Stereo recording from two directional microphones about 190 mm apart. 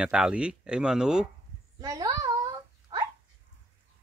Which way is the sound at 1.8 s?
20° right (ahead or behind).